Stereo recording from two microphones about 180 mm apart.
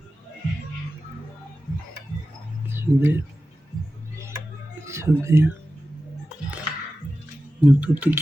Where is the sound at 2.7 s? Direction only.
10° right (ahead or behind).